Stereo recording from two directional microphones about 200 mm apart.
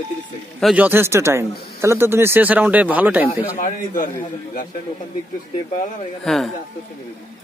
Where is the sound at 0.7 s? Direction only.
10° right (ahead or behind).